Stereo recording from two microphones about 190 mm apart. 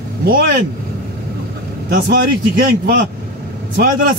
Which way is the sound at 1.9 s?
50° right (ahead or behind).